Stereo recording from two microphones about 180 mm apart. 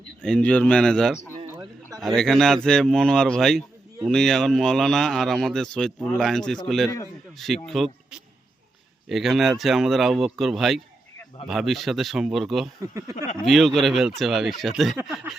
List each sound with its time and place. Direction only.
0.2 s a man's voice: 5° left (ahead or behind)
12.8 s speech: 20° right (ahead or behind)
13.4 s a man's voice: centre (ahead or behind)